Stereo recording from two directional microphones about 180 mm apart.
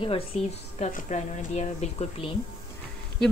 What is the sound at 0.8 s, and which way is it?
Speech, 45° left (ahead or behind).